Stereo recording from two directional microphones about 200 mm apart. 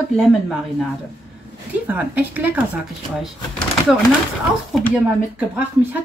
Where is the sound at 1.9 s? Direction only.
10° right (ahead or behind).